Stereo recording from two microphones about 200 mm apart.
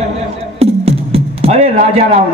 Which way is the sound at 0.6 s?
30° right (ahead or behind).